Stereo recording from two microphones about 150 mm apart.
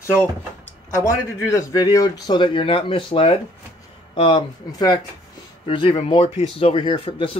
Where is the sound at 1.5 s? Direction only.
25° left (ahead or behind).